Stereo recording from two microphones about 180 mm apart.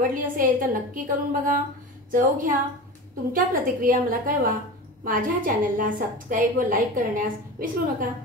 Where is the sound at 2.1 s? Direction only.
50° right (ahead or behind).